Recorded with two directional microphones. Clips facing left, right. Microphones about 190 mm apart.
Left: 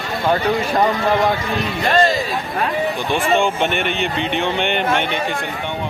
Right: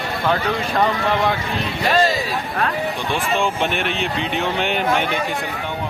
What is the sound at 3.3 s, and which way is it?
Speech, centre (ahead or behind).